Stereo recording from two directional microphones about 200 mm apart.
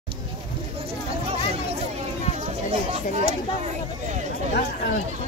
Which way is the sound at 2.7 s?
30° right (ahead or behind).